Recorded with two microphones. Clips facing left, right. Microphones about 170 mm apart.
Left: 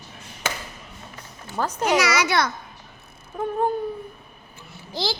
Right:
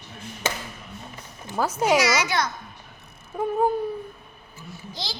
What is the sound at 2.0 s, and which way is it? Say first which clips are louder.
Speech: left 1 dB; 65° left (ahead or behind).